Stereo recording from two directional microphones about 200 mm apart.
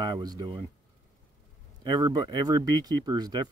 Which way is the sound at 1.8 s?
20° right (ahead or behind).